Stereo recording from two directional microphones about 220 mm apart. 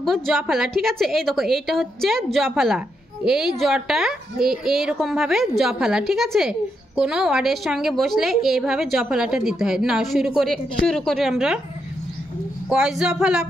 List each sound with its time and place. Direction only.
0.0 s a woman's voice: centre (ahead or behind)
12.6 s a woman's voice: centre (ahead or behind)